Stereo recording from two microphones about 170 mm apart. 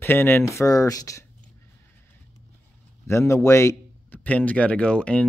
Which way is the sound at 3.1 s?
15° left (ahead or behind).